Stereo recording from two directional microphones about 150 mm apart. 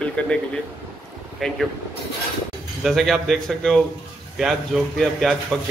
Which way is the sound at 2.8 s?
Centre (ahead or behind).